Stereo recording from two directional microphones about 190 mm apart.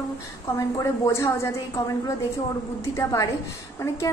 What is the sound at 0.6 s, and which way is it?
A woman's voice, 15° left (ahead or behind).